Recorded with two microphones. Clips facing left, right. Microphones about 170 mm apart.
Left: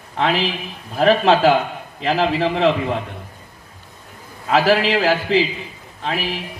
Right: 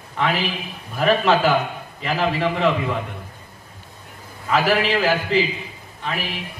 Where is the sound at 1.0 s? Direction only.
30° left (ahead or behind).